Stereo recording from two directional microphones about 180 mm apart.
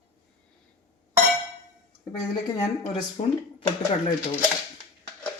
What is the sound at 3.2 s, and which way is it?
Speech, 30° left (ahead or behind).